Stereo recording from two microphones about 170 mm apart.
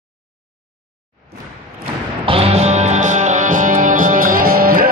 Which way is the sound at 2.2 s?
35° right (ahead or behind).